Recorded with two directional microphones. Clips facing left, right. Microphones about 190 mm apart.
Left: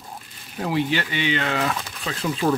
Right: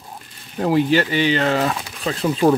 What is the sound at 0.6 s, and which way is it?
Speech, 45° right (ahead or behind).